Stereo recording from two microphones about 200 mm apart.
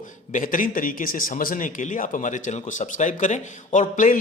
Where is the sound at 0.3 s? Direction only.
40° left (ahead or behind).